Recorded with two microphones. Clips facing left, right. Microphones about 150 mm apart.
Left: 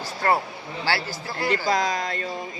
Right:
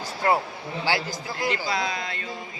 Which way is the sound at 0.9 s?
15° right (ahead or behind).